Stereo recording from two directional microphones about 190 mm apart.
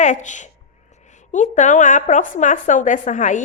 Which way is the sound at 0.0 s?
40° left (ahead or behind).